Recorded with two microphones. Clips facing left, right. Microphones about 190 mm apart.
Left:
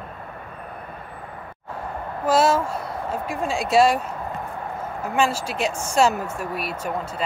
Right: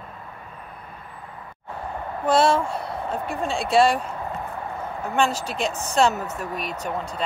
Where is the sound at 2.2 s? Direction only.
5° left (ahead or behind).